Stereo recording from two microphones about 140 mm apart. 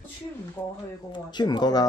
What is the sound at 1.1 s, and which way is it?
Speech, 30° left (ahead or behind).